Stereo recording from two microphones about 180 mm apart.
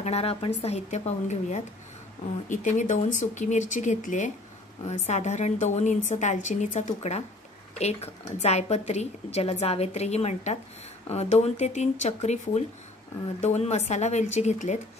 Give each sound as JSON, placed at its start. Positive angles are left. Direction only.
{"t": 0.0, "sound": "a woman's voice", "side_deg": 35}